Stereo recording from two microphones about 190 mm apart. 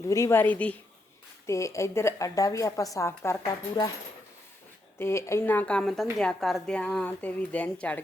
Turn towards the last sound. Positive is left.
turn(degrees=5)  # may be behind; listen again after turning